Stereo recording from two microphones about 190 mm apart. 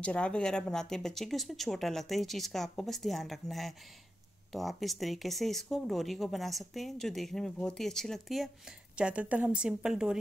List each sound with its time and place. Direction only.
0.0 s speech: 5° left (ahead or behind)